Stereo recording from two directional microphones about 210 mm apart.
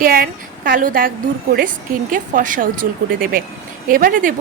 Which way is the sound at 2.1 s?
40° right (ahead or behind).